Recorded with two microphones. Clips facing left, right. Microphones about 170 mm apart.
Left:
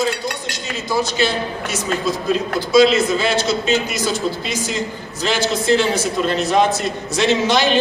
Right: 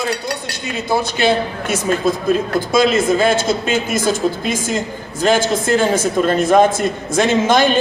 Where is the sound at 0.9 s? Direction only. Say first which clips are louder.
Right 3 dB; 55° right (ahead or behind).